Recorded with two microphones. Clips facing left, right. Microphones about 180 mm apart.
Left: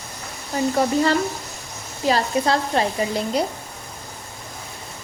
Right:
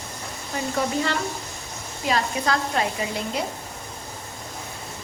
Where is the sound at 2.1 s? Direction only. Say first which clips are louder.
Left 4 dB; 30° left (ahead or behind).